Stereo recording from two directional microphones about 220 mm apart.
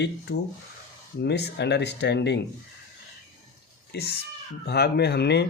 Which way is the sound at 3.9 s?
45° left (ahead or behind).